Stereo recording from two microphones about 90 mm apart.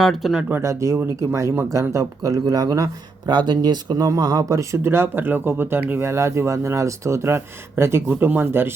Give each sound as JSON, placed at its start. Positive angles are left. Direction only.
{"t": 0.0, "sound": "speech", "side_deg": 0}
{"t": 0.6, "sound": "speech", "side_deg": -35}